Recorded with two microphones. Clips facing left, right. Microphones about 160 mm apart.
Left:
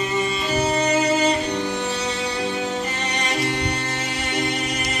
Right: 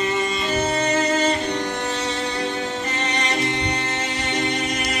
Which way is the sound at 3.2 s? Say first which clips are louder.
Left 2 dB; 10° left (ahead or behind).